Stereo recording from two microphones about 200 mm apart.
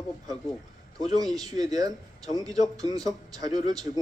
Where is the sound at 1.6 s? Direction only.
20° right (ahead or behind).